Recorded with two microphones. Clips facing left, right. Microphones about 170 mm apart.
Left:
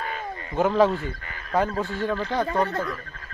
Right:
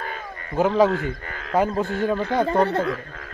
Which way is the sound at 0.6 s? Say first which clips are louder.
Right 2 dB; 5° right (ahead or behind).